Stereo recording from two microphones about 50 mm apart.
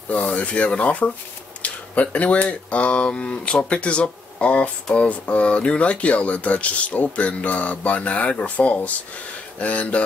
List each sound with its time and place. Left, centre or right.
0.1 s speech: left
1.6 s a sound: left
2.4 s speech: left